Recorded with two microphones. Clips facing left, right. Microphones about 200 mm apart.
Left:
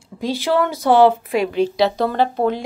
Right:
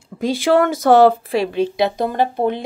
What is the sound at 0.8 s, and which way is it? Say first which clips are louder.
Speech: right 1 dB; 40° right (ahead or behind).